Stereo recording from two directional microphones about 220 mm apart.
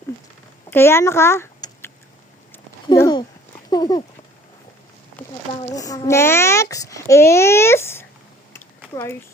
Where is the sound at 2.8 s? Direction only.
15° left (ahead or behind).